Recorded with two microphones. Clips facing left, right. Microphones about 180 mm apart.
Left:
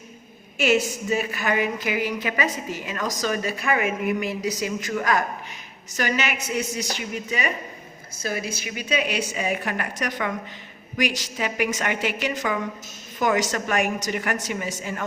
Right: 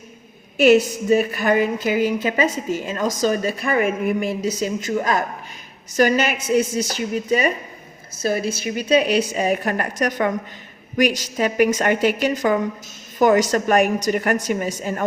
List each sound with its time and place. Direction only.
1.4 s a woman's voice: 40° right (ahead or behind)
3.8 s a woman's voice: 50° right (ahead or behind)
4.3 s a woman's voice: 25° right (ahead or behind)
6.0 s a woman's voice: 45° right (ahead or behind)
6.3 s a woman's voice: 30° right (ahead or behind)
8.6 s a woman's voice: 40° right (ahead or behind)